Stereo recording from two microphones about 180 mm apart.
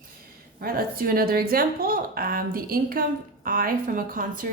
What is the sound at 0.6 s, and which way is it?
A woman's voice, 55° right (ahead or behind).